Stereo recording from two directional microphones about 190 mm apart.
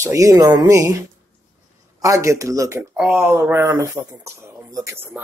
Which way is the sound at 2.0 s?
15° right (ahead or behind).